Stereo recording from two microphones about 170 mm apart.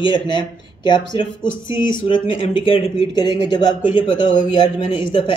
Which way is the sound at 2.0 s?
30° left (ahead or behind).